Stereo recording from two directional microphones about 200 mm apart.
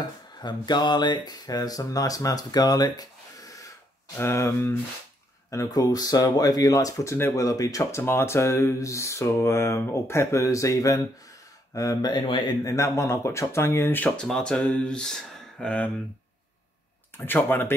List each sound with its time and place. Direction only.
0.0 s speech: 20° left (ahead or behind); by 15.9 s 5° left (ahead or behind)
17.2 s speech: 10° left (ahead or behind)